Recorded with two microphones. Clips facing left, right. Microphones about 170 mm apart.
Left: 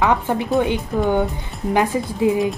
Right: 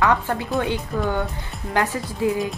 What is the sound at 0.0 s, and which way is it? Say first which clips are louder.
A woman's voice: left 2 dB; 20° left (ahead or behind).